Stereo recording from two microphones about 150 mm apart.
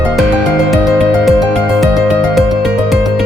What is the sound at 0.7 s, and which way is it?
Music, centre (ahead or behind).